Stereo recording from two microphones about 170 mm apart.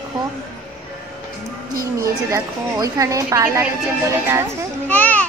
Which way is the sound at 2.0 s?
20° right (ahead or behind).